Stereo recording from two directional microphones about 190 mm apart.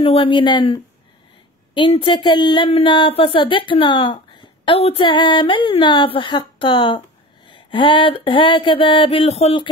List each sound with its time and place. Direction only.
0.0 s speech: 25° left (ahead or behind)